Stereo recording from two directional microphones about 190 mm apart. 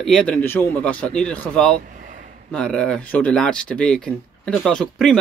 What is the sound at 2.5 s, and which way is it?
Speech, 5° left (ahead or behind).